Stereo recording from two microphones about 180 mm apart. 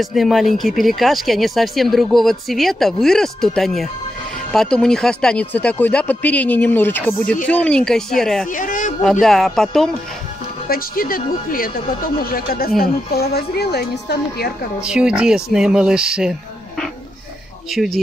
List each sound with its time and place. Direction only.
0.0 s speech: centre (ahead or behind)
8.5 s speech: 45° left (ahead or behind)
9.2 s speech: centre (ahead or behind)
10.7 s speech: 55° left (ahead or behind)
14.8 s speech: 5° right (ahead or behind)